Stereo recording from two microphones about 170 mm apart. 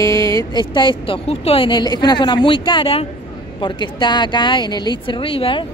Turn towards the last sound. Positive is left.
turn(degrees=30)  # may be behind; listen again after turning